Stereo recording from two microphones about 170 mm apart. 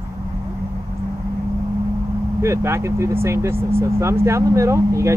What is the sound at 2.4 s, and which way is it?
Speech, 15° right (ahead or behind).